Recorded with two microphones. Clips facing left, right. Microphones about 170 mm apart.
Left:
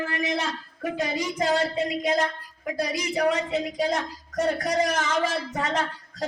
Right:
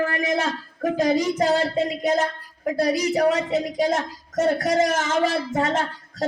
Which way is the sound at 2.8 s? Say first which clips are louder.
Right 5 dB; 45° right (ahead or behind).